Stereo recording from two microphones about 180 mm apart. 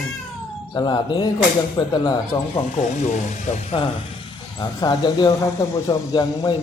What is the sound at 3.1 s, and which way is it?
Speech, 35° left (ahead or behind).